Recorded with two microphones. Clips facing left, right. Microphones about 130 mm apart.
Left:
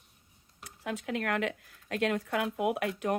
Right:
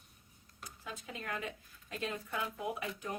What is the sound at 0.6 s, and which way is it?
Speech, 75° left (ahead or behind).